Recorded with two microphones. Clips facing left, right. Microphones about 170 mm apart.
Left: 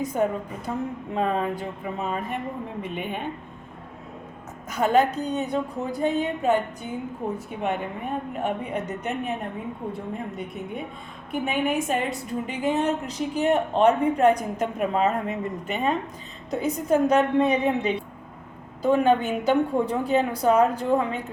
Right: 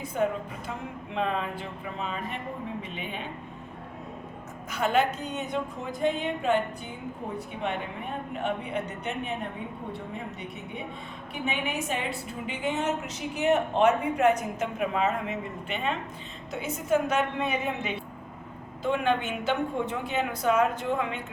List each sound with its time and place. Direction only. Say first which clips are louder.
0.0 s a woman's voice: left 3 dB; 40° left (ahead or behind)
4.8 s a woman's voice: left 5 dB; 40° left (ahead or behind)
8.4 s a woman's voice: left 2 dB; 40° left (ahead or behind)
11.3 s a woman's voice: left 7 dB; 45° left (ahead or behind)
12.5 s a woman's voice: left 4 dB; 35° left (ahead or behind)